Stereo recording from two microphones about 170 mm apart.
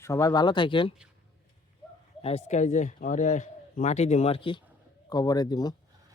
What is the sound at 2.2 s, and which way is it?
Speech, 40° left (ahead or behind).